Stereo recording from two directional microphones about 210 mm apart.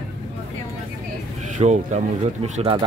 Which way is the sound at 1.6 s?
35° right (ahead or behind).